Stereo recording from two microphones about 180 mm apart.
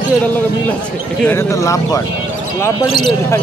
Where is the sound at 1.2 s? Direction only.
15° left (ahead or behind).